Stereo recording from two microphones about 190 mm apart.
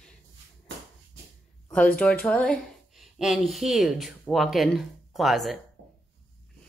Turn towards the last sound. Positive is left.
turn(degrees=0)  # may be behind; listen again after turning